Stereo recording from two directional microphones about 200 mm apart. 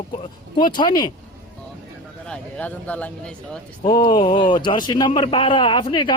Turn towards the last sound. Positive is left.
turn(degrees=25)  # may be behind; listen again after turning